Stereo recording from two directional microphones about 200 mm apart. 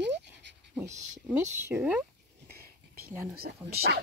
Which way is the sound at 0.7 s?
10° right (ahead or behind).